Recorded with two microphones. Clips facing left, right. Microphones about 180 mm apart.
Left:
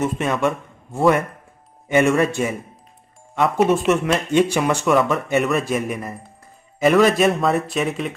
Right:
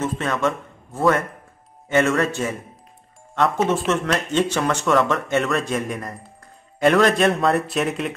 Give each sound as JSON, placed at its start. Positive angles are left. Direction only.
{"t": 0.0, "sound": "a man's voice", "side_deg": 15}